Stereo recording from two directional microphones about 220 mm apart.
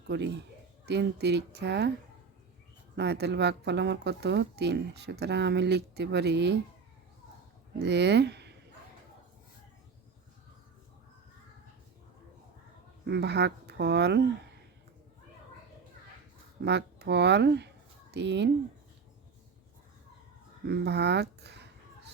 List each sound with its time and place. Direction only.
0.1 s speech: 50° right (ahead or behind)
2.9 s speech: 50° right (ahead or behind)
7.8 s speech: 50° right (ahead or behind)
13.1 s speech: 50° right (ahead or behind)
16.6 s speech: 50° right (ahead or behind)
20.7 s a sound: 50° right (ahead or behind)